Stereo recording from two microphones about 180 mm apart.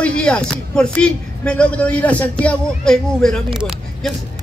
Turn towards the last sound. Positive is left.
turn(degrees=-5)  # may be behind; listen again after turning